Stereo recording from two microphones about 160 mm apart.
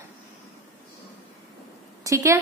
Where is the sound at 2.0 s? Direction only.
20° right (ahead or behind).